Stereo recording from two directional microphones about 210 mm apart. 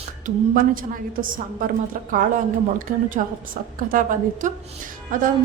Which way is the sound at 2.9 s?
40° right (ahead or behind).